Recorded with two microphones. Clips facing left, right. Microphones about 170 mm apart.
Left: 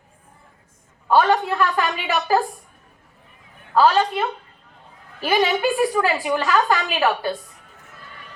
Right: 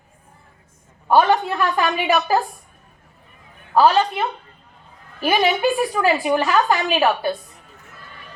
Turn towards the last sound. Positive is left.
turn(degrees=-15)  # may be behind; listen again after turning